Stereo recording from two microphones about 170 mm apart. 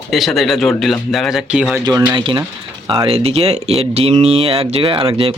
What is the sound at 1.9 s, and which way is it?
Speech, 20° right (ahead or behind).